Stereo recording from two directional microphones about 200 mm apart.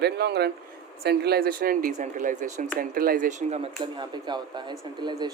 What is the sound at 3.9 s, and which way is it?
A man's voice, 20° right (ahead or behind).